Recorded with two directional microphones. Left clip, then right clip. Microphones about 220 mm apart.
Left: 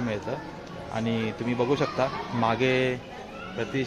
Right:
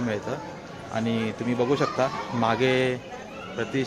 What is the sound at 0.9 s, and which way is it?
A man's voice, centre (ahead or behind).